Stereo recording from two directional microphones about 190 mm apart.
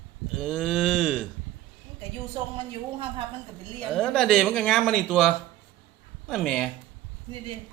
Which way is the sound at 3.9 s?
Centre (ahead or behind).